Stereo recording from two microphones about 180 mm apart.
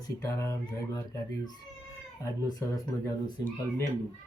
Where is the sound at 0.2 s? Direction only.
15° left (ahead or behind).